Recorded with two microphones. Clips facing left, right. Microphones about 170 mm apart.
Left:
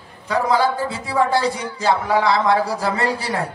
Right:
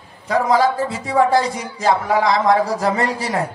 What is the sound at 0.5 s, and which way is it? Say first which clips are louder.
A man's voice: right 3 dB; 30° left (ahead or behind).